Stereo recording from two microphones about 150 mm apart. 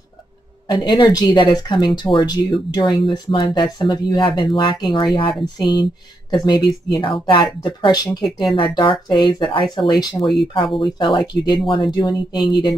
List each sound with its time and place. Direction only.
0.7 s speech: 30° left (ahead or behind)